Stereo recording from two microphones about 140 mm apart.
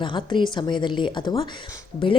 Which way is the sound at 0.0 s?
35° left (ahead or behind).